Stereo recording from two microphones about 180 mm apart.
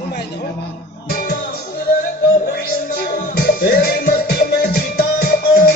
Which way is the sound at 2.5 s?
50° left (ahead or behind).